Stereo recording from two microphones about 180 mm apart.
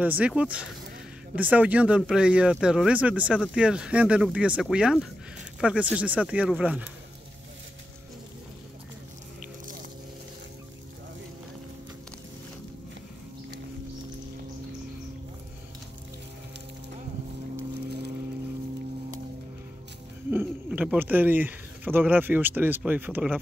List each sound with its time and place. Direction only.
0.0 s speech: 10° right (ahead or behind)
9.4 s biting: 45° right (ahead or behind)
20.2 s speech: 10° right (ahead or behind)